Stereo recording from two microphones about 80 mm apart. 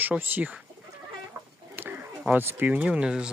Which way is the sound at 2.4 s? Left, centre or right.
Right.